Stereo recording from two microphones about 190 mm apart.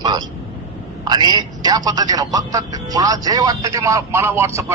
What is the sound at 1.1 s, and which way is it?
A man's voice, 20° right (ahead or behind).